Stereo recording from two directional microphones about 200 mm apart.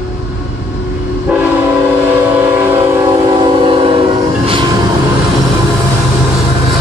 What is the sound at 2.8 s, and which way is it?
Train, 20° right (ahead or behind).